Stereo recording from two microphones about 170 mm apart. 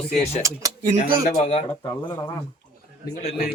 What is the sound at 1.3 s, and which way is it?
Speech, 35° left (ahead or behind).